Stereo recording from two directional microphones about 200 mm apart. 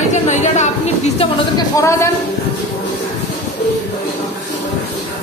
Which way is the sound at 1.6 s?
15° left (ahead or behind).